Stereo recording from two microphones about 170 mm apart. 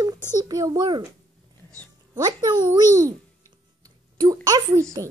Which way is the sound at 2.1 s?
25° right (ahead or behind).